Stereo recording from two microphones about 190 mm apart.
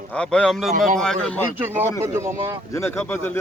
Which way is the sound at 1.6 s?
10° right (ahead or behind).